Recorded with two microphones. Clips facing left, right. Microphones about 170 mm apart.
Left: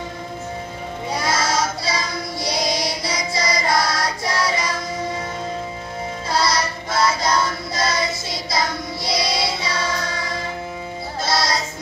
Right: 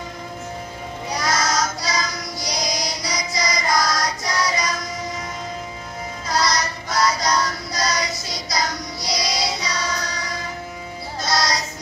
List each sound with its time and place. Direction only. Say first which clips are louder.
1.1 s child singing: left 1 dB; 30° left (ahead or behind)
6.2 s music: left 1 dB; 30° left (ahead or behind)